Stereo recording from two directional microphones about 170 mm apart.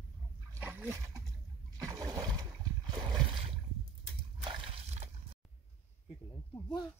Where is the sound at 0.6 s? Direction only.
10° right (ahead or behind).